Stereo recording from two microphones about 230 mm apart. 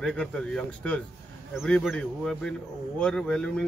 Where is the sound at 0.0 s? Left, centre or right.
Centre.